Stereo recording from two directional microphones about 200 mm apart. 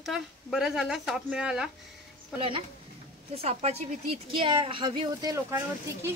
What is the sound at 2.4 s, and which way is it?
A woman's voice, 25° right (ahead or behind).